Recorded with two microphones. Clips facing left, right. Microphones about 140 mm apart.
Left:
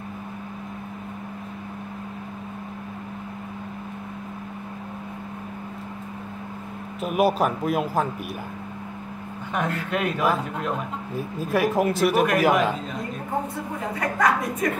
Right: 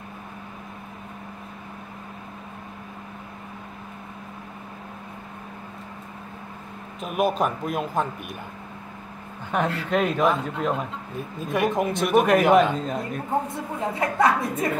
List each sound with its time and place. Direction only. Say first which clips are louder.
7.0 s speech: left 2 dB; 5° left (ahead or behind)
9.8 s speech: right 2 dB; 5° left (ahead or behind)
13.9 s a woman's voice: right 1 dB; 25° right (ahead or behind)